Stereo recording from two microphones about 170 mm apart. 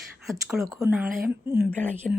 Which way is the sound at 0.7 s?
20° right (ahead or behind).